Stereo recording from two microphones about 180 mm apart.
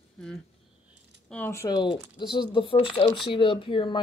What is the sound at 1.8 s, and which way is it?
Speech, 25° left (ahead or behind).